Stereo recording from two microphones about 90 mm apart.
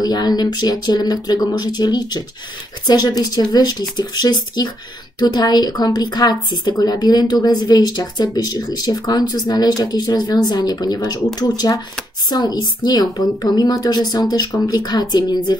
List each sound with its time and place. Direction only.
0.0 s speech: 50° left (ahead or behind)